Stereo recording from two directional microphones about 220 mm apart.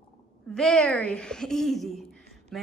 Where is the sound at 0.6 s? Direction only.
5° left (ahead or behind).